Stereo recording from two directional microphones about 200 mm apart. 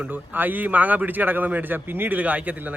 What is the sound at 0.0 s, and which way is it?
A man's voice, 10° right (ahead or behind).